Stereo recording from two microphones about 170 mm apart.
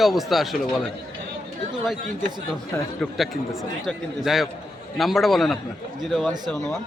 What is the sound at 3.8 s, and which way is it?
Speech, centre (ahead or behind).